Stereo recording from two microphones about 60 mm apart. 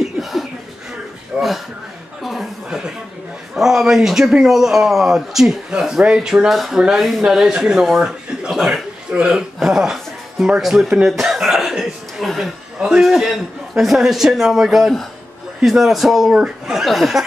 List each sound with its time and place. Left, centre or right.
0.0 s chuckle: centre
1.3 s speech: centre
2.2 s a sound: centre
3.5 s speech: centre
6.5 s a man's voice: centre
8.5 s a man's voice: centre
9.1 s music: centre
13.0 s a man's voice: centre